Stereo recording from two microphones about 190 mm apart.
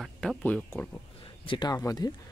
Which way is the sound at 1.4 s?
25° left (ahead or behind).